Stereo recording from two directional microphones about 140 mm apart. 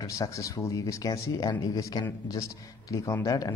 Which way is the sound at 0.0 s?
20° left (ahead or behind).